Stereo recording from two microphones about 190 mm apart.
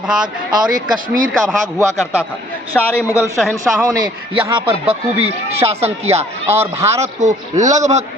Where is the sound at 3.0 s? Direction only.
10° right (ahead or behind).